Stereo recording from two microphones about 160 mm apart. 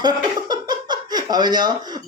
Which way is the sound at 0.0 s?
25° right (ahead or behind).